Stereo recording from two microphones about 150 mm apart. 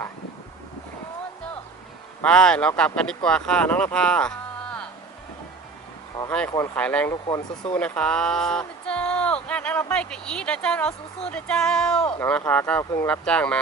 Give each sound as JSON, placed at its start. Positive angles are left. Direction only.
{"t": 2.2, "sound": "speech", "side_deg": 5}
{"t": 3.9, "sound": "a sound", "side_deg": 5}
{"t": 6.2, "sound": "speech", "side_deg": 10}
{"t": 7.1, "sound": "speech", "side_deg": 25}
{"t": 7.6, "sound": "speech", "side_deg": 10}